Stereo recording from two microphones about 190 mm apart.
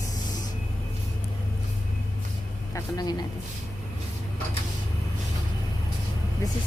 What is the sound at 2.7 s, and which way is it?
Speech, 20° left (ahead or behind).